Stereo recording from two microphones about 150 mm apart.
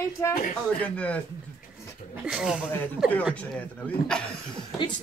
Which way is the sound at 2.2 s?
5° right (ahead or behind).